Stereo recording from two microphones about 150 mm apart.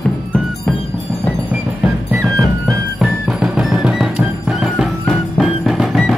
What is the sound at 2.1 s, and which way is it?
Music, 20° right (ahead or behind).